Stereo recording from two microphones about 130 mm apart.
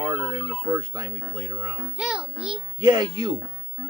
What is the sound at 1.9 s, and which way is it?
Music, 5° right (ahead or behind).